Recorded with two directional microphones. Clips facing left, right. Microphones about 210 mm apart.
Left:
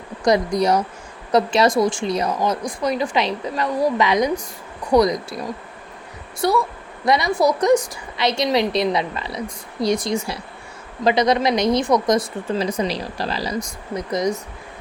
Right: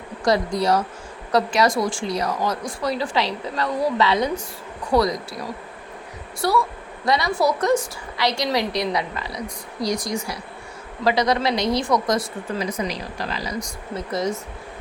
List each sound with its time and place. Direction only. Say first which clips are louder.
0.3 s a woman's voice: left 2 dB; 20° left (ahead or behind)
6.4 s a woman's voice: left 2 dB; 20° left (ahead or behind)
13.9 s speech: left 3 dB; 15° left (ahead or behind)